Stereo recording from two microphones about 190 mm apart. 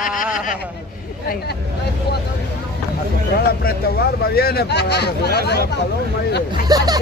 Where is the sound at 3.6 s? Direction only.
55° left (ahead or behind).